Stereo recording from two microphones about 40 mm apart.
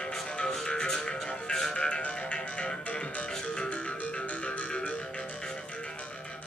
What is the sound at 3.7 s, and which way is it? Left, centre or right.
Music, left.